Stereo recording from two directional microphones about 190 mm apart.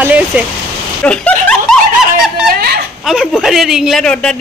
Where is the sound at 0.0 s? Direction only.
5° right (ahead or behind).